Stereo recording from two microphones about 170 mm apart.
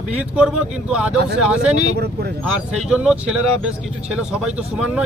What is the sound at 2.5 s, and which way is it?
Speech, 5° right (ahead or behind).